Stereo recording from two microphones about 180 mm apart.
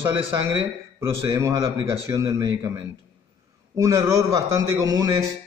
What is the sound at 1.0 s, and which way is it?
A man's voice, 15° right (ahead or behind).